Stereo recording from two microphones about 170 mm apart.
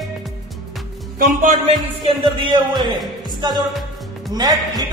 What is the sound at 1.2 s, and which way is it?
Speech, 50° right (ahead or behind).